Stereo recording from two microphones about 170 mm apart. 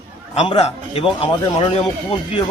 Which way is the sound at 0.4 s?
35° left (ahead or behind).